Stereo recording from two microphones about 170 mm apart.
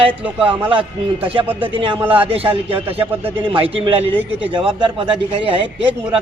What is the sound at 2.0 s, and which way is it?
Speech, 10° right (ahead or behind).